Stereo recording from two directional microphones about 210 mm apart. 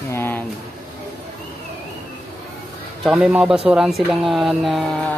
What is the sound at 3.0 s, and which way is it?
Speech, 5° right (ahead or behind).